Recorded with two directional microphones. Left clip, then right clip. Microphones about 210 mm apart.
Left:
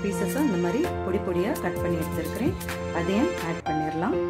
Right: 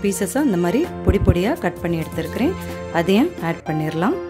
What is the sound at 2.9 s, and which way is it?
Speech, 50° right (ahead or behind).